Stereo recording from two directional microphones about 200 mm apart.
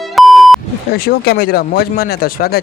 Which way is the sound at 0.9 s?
50° left (ahead or behind).